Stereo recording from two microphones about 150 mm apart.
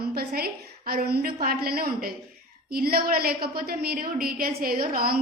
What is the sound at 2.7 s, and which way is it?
A woman's voice, 85° right.